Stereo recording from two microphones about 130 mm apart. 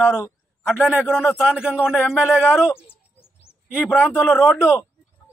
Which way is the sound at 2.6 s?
20° left (ahead or behind).